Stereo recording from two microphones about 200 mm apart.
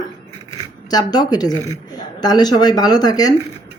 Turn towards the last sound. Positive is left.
turn(degrees=20)  # may be behind; listen again after turning